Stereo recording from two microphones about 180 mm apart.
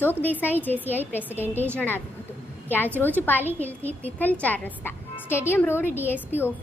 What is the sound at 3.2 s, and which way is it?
A woman's voice, 10° left (ahead or behind).